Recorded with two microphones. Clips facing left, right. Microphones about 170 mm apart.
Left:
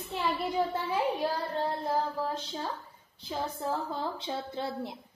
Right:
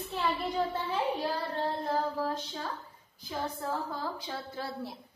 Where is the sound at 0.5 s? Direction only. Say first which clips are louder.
Left 2 dB; 10° left (ahead or behind).